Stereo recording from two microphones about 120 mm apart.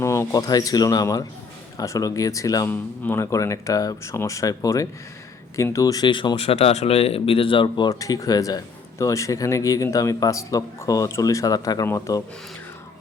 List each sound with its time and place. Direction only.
0.0 s speech: 25° left (ahead or behind)
2.6 s speech: 15° left (ahead or behind); by 7.9 s 40° left (ahead or behind)
7.9 s speech: 30° left (ahead or behind)